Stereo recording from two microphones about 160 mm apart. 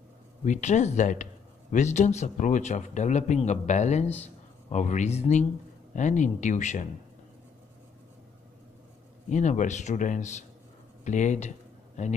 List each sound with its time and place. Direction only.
0.5 s speech: 45° left (ahead or behind)
9.3 s speech: 50° left (ahead or behind)